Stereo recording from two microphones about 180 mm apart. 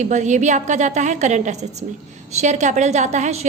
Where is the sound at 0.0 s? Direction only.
40° right (ahead or behind).